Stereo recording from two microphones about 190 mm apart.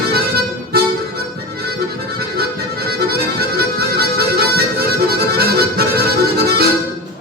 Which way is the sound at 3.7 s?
55° right (ahead or behind).